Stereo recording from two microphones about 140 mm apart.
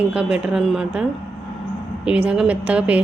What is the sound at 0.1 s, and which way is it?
Speech, 10° right (ahead or behind).